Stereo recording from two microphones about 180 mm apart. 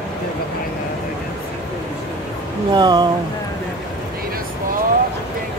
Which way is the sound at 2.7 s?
25° right (ahead or behind).